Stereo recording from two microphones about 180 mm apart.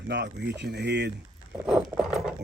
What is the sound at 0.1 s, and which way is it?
Speech, 75° right (ahead or behind).